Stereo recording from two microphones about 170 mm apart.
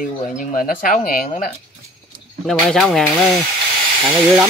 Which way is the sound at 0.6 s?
55° left (ahead or behind).